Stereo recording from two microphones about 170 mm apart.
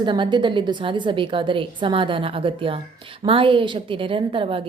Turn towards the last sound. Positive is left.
turn(degrees=-30)  # may be behind; listen again after turning